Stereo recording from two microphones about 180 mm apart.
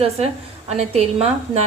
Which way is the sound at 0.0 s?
35° right (ahead or behind).